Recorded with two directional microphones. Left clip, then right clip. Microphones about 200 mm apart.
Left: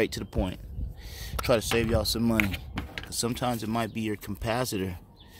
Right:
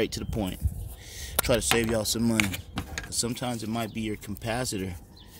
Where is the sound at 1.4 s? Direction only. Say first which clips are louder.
Even; 5° left (ahead or behind).